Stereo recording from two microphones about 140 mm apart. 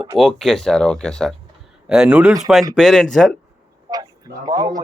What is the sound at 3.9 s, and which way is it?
Speech, 25° right (ahead or behind).